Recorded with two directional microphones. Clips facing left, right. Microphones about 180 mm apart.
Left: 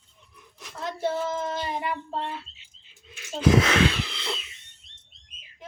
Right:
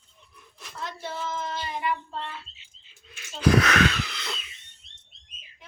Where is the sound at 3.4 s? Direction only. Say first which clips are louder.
Left 1 dB; 25° left (ahead or behind).